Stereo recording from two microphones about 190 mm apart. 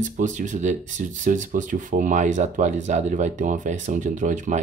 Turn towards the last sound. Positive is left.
turn(degrees=-40)  # may be behind; listen again after turning